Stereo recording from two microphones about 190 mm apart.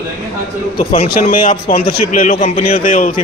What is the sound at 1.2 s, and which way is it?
A man's voice, 45° left (ahead or behind).